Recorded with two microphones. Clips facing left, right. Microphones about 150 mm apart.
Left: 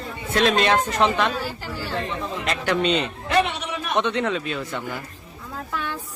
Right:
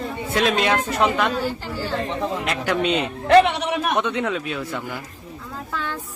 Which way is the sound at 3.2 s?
80° right.